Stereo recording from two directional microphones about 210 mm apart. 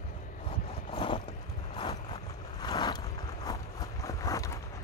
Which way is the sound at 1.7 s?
25° left (ahead or behind).